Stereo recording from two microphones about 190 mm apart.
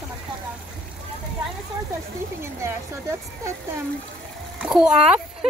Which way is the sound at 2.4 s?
15° right (ahead or behind).